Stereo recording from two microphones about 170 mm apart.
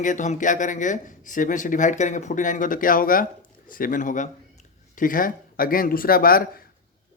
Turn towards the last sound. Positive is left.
turn(degrees=60)  # may be behind; listen again after turning